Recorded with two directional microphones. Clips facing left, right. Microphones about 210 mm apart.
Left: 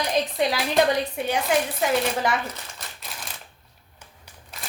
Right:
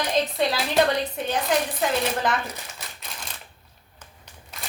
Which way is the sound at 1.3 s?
10° left (ahead or behind).